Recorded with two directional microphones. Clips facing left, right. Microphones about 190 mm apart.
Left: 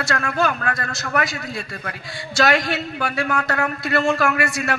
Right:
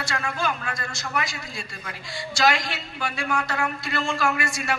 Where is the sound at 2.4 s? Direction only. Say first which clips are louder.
Left 4 dB; 60° left (ahead or behind).